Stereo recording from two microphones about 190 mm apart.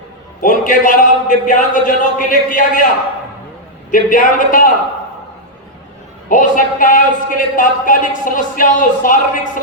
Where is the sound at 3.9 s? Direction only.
45° left (ahead or behind).